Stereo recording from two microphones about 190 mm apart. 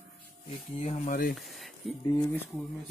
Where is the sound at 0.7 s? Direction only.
35° left (ahead or behind).